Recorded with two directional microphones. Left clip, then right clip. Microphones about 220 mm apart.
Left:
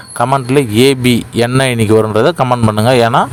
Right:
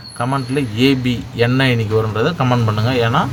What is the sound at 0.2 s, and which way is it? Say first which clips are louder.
A man's voice: left 8 dB; 45° left (ahead or behind).